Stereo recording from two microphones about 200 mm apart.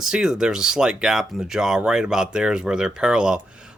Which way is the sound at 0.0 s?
5° right (ahead or behind).